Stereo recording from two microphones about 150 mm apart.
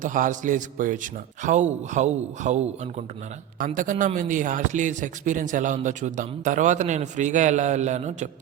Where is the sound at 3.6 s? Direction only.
60° right (ahead or behind).